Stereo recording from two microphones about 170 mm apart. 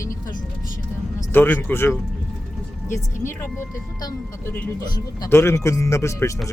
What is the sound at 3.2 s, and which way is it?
Speech, 15° left (ahead or behind).